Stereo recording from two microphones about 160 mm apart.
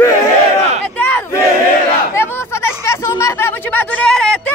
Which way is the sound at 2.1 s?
15° left (ahead or behind).